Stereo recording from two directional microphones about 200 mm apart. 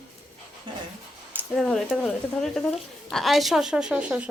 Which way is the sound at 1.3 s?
Centre (ahead or behind).